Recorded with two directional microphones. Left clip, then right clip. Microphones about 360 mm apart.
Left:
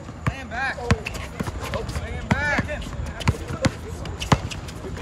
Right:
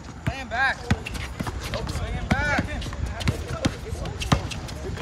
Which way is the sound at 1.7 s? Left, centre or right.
Centre.